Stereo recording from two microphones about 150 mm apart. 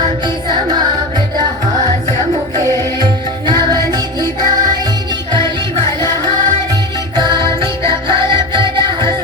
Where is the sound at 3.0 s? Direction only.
30° right (ahead or behind).